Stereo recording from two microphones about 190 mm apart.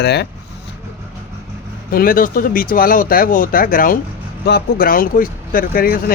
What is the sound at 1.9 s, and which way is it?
Speech, 50° left (ahead or behind).